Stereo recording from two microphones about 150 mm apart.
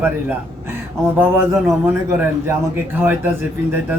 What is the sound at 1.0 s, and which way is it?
Speech, 15° right (ahead or behind).